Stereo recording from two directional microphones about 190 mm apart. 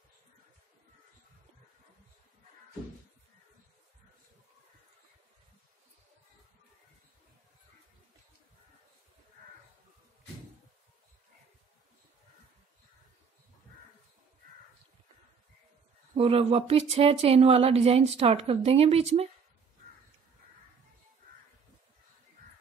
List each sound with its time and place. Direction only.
16.2 s speech: 30° right (ahead or behind)